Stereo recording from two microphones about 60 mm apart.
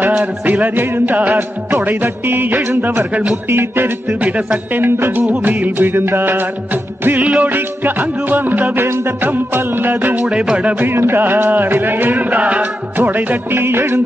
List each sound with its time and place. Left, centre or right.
0.0 s music: right
3.4 s music: right
7.1 s music: right
10.2 s music: centre
10.9 s music: right